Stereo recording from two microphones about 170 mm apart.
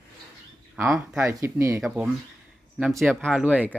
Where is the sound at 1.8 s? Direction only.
Centre (ahead or behind).